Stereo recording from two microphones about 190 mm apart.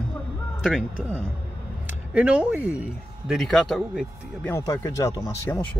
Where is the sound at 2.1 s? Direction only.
5° right (ahead or behind).